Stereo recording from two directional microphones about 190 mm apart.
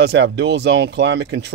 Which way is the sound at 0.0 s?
65° right (ahead or behind).